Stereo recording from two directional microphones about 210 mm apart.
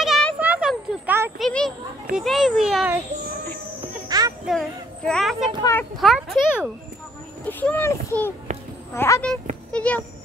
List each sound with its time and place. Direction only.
0.0 s a sound: centre (ahead or behind)
1.4 s children playing: 5° left (ahead or behind)
2.1 s a child's voice: centre (ahead or behind)
4.1 s a sound: 15° right (ahead or behind)
4.5 s speech: centre (ahead or behind)
5.6 s a child's voice: 15° left (ahead or behind)
5.9 s a child's voice: centre (ahead or behind)